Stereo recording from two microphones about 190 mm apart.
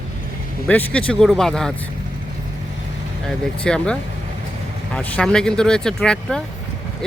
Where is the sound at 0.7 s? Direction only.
5° left (ahead or behind).